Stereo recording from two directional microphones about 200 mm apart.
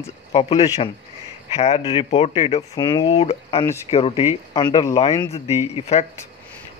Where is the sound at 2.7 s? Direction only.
20° left (ahead or behind).